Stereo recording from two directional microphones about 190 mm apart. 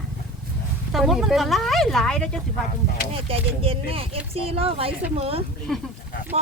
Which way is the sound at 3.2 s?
30° right (ahead or behind).